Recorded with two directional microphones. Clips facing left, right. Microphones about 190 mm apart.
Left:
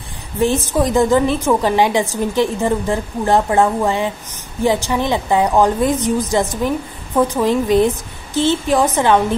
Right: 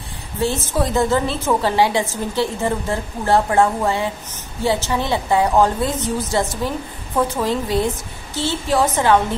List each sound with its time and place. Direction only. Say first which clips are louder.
0.4 s a woman's voice: left 4 dB; 15° left (ahead or behind)